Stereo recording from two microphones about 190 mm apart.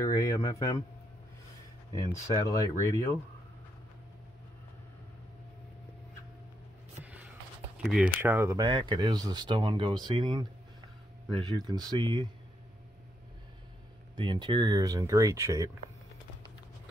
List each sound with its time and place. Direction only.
0.0 s speech: 15° left (ahead or behind)
1.9 s speech: 15° left (ahead or behind)
7.7 s speech: 5° right (ahead or behind); by 12.3 s 25° right (ahead or behind)
14.1 s speech: 25° right (ahead or behind)